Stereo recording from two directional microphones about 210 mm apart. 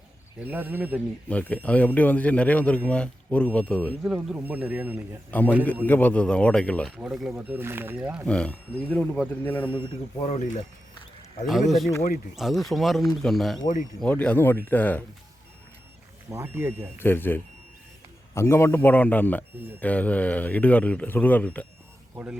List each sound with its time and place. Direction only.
0.3 s speech: 10° right (ahead or behind)
1.3 s a man's voice: 5° left (ahead or behind)
4.1 s speech: 10° right (ahead or behind)
5.3 s a man's voice: 10° left (ahead or behind)
8.3 s a man's voice: 5° left (ahead or behind)
9.7 s speech: 30° left (ahead or behind)
11.4 s a man's voice: centre (ahead or behind)
16.3 s speech: 10° right (ahead or behind)
17.0 s a man's voice: 10° left (ahead or behind)
22.1 s speech: 5° right (ahead or behind)